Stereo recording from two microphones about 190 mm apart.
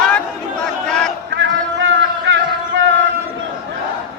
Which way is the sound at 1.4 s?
85° right.